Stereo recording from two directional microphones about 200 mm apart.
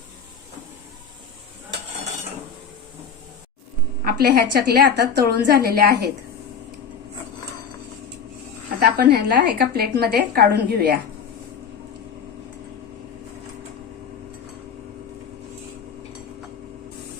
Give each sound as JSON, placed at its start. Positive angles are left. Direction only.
{"t": 4.0, "sound": "a woman's voice", "side_deg": -50}
{"t": 8.8, "sound": "a woman's voice", "side_deg": -55}